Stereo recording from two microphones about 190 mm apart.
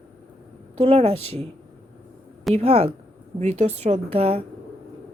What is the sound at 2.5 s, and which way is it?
A woman's voice, 35° right (ahead or behind).